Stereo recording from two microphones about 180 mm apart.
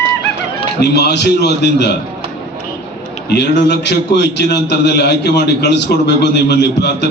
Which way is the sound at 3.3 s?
70° left (ahead or behind).